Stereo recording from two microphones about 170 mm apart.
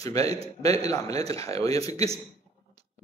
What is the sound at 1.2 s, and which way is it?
Speech, 20° left (ahead or behind).